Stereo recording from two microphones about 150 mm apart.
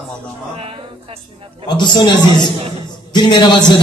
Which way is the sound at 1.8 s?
30° left (ahead or behind).